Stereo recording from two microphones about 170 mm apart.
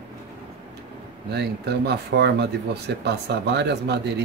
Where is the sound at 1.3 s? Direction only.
80° right.